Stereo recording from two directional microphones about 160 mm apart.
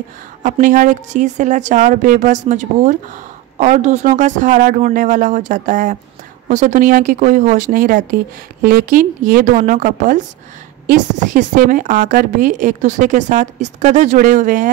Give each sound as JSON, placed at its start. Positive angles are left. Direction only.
{"t": 0.4, "sound": "a woman's voice", "side_deg": -55}